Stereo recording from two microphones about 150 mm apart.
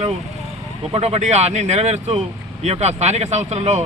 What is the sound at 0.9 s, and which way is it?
Speech, 45° right (ahead or behind).